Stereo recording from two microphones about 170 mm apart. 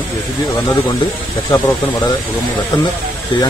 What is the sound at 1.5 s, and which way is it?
Speech, 20° left (ahead or behind).